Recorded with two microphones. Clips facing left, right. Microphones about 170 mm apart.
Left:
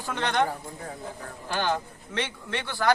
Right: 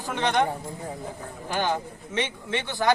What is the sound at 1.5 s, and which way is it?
A man's voice, 15° right (ahead or behind).